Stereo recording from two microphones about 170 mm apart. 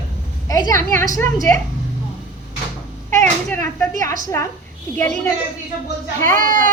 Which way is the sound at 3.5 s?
10° left (ahead or behind).